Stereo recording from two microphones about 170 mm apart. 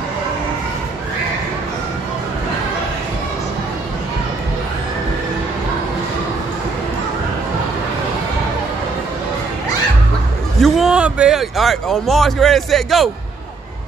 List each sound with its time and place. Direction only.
10.6 s speech: 5° right (ahead or behind)